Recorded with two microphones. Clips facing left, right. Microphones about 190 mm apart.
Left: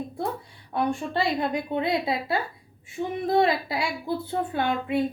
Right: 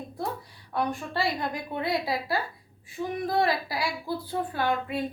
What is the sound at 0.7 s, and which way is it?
A woman's voice, 25° left (ahead or behind).